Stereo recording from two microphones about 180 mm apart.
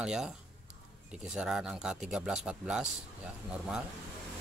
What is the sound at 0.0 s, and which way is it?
Speech, 5° right (ahead or behind).